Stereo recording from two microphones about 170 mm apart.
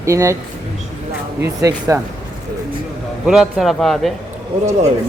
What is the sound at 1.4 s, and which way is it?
Speech, 15° right (ahead or behind).